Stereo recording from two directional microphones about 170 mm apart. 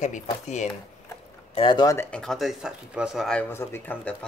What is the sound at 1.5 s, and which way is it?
Speech, 30° left (ahead or behind).